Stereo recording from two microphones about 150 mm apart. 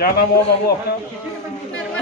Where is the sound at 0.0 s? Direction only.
90° left.